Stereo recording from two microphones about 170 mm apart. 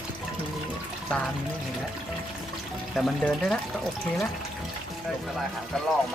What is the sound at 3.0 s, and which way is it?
Speech, centre (ahead or behind).